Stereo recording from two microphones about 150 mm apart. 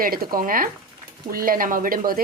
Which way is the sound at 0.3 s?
70° right (ahead or behind).